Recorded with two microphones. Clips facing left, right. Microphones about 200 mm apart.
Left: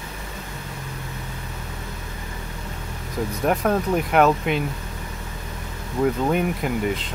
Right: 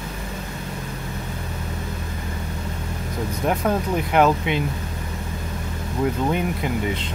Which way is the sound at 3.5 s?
Centre (ahead or behind).